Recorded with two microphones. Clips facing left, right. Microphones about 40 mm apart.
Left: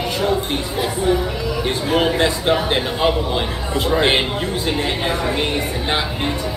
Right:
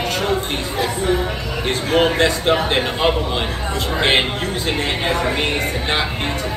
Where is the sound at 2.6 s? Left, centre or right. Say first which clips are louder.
Even; right.